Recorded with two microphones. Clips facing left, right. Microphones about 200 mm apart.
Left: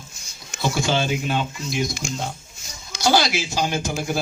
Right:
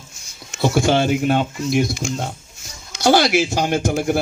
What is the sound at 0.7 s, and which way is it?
Speech, 60° right (ahead or behind).